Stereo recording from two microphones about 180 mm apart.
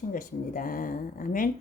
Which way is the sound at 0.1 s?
50° left (ahead or behind).